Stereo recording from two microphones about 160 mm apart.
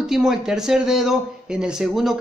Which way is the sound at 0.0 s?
Centre (ahead or behind).